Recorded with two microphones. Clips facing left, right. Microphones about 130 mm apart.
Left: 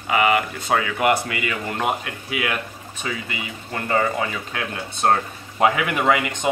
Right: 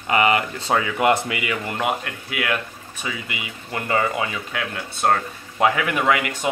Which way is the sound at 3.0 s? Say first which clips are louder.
Left 1 dB; 10° right (ahead or behind).